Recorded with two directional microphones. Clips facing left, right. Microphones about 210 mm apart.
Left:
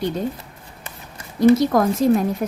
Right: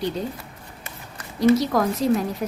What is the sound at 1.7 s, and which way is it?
Speech, 50° left (ahead or behind).